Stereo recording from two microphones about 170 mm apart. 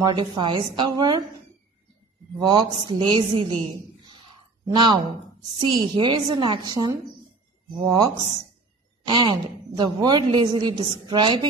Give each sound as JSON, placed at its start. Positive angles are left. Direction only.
{"t": 0.0, "sound": "a woman's voice", "side_deg": -25}
{"t": 2.3, "sound": "a woman's voice", "side_deg": -25}